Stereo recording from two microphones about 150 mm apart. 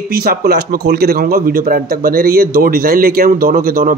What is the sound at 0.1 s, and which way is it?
A man's voice, 90° right.